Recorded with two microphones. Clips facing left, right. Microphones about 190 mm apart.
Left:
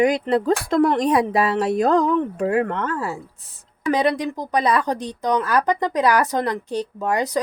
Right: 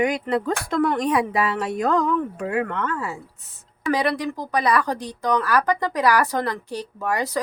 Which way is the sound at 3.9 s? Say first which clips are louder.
Left 2 dB; 20° left (ahead or behind).